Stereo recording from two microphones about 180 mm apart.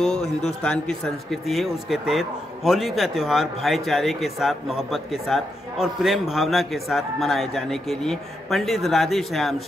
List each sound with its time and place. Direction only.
0.2 s a man's voice: 35° left (ahead or behind)
0.7 s a man's voice: 5° left (ahead or behind)